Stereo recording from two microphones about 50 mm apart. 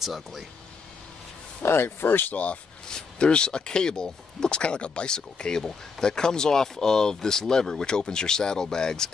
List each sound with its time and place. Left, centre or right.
0.0 s speech: centre
1.6 s speech: left; by 9.1 s centre